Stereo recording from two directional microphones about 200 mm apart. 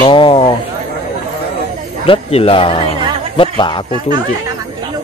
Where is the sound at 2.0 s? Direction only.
30° left (ahead or behind).